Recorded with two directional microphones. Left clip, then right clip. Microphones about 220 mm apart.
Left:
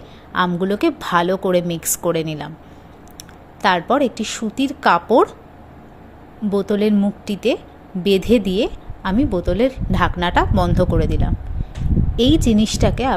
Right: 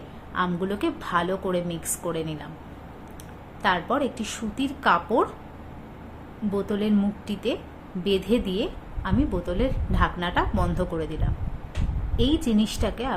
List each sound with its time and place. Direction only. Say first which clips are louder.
0.3 s a woman's voice: left 8 dB; 35° left (ahead or behind)
3.6 s a woman's voice: left 8 dB; 30° left (ahead or behind)
6.5 s a woman's voice: left 8 dB; 30° left (ahead or behind)